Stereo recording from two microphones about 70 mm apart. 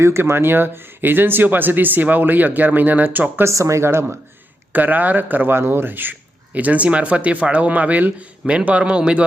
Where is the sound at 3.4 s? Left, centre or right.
Right.